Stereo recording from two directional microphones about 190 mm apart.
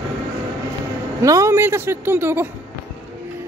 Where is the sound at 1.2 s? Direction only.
15° right (ahead or behind).